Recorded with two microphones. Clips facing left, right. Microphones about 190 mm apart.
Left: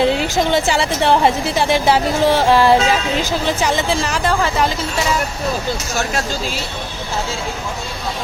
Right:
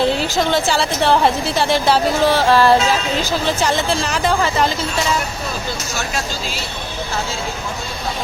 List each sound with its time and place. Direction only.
0.0 s a woman's voice: 15° left (ahead or behind)